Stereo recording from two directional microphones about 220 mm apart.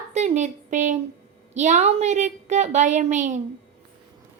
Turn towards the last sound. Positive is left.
turn(degrees=-35)  # may be behind; listen again after turning